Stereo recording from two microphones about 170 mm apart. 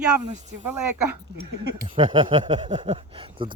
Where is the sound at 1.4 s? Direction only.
30° right (ahead or behind).